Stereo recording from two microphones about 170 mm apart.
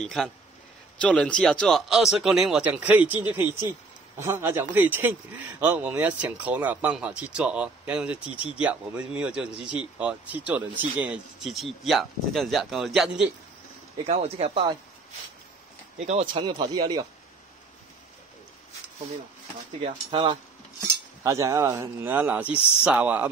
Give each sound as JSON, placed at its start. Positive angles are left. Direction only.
{"t": 0.0, "sound": "speech", "side_deg": 0}
{"t": 14.0, "sound": "speech", "side_deg": -40}
{"t": 16.1, "sound": "speech", "side_deg": -35}
{"t": 19.8, "sound": "speech", "side_deg": -30}
{"t": 20.8, "sound": "cutlery", "side_deg": -15}
{"t": 22.0, "sound": "speech", "side_deg": -10}